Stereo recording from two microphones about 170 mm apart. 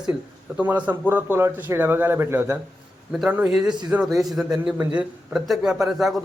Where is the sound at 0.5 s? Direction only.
10° right (ahead or behind).